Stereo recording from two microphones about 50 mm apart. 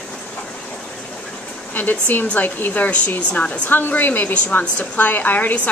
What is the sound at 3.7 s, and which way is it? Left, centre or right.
A woman's voice, left.